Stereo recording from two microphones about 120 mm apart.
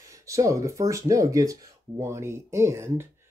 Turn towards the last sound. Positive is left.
turn(degrees=-20)  # may be behind; listen again after turning